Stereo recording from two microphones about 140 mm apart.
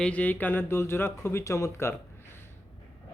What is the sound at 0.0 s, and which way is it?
Speech, 10° left (ahead or behind).